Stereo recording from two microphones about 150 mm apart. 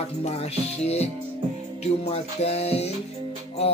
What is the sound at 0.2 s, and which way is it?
Music, 45° left (ahead or behind).